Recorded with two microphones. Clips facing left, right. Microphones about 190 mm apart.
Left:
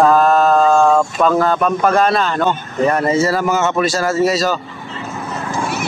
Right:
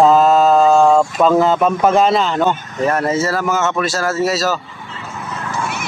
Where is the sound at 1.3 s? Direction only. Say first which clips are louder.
Right 2 dB; 15° right (ahead or behind).